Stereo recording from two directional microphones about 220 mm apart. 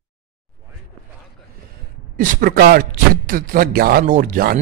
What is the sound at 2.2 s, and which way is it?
Speech, 40° right (ahead or behind).